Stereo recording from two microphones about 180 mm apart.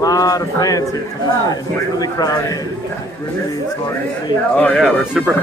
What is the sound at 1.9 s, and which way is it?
Speech, 20° left (ahead or behind).